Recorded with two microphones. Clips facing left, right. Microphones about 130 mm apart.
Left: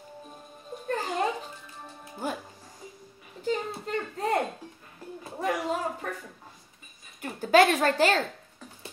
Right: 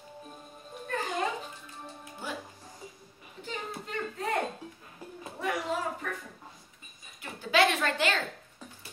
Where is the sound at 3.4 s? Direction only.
40° left (ahead or behind).